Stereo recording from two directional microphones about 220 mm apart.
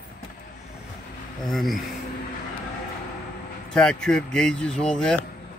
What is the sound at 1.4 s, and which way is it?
Speech, centre (ahead or behind).